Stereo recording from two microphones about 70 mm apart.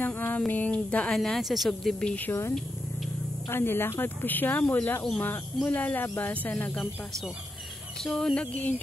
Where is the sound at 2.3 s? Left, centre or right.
Left.